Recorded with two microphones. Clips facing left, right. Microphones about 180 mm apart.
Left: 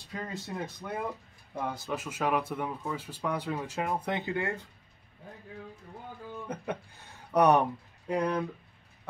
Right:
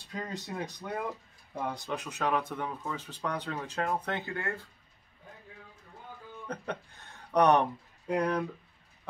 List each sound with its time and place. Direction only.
0.1 s speech: centre (ahead or behind); by 4.6 s 15° left (ahead or behind)
6.4 s speech: 5° left (ahead or behind)